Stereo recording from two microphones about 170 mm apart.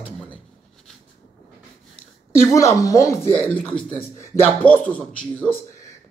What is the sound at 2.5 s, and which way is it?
Speech, 20° left (ahead or behind).